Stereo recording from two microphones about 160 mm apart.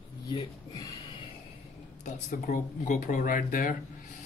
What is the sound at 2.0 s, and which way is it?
Speech, 50° left (ahead or behind).